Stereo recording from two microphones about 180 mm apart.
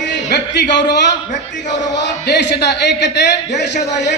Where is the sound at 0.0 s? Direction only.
75° left (ahead or behind).